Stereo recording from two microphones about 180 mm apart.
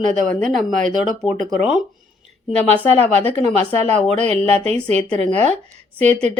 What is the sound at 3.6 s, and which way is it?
A woman's voice, 35° right (ahead or behind).